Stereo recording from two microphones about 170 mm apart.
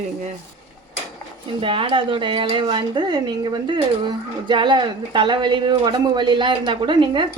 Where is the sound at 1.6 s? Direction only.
30° right (ahead or behind).